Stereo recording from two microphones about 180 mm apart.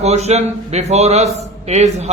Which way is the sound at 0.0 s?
35° right (ahead or behind).